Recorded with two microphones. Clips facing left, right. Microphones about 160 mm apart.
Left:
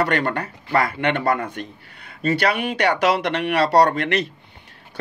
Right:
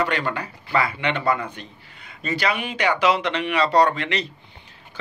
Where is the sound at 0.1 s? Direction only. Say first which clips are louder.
Left 4 dB; 55° left (ahead or behind).